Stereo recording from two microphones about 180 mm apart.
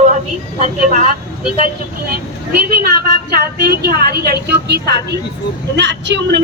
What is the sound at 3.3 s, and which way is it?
Speech, 60° right (ahead or behind).